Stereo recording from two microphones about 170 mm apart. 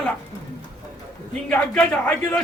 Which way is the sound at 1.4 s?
5° left (ahead or behind).